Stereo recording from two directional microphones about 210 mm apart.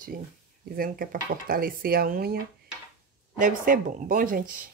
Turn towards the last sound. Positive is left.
turn(degrees=-40)  # may be behind; listen again after turning